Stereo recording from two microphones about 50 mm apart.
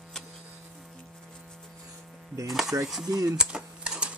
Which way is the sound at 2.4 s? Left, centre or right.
Centre.